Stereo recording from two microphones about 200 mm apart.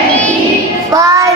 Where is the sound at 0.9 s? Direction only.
15° right (ahead or behind).